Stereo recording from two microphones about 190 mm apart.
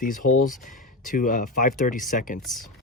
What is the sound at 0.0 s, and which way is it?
Speech, 45° left (ahead or behind).